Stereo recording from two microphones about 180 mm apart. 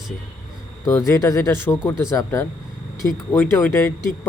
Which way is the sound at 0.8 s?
15° left (ahead or behind).